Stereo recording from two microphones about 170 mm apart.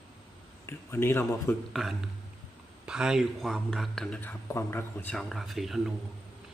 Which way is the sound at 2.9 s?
5° right (ahead or behind).